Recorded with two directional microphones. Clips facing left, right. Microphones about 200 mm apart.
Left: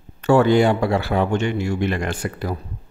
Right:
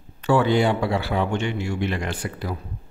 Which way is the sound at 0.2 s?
45° left (ahead or behind).